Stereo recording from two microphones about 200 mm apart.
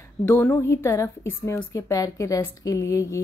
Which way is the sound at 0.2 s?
10° left (ahead or behind).